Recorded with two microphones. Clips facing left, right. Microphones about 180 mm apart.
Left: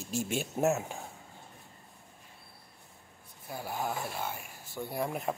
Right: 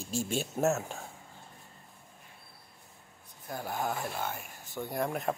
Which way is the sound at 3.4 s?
5° left (ahead or behind).